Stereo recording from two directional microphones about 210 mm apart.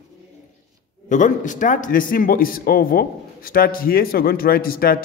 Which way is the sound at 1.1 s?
35° left (ahead or behind).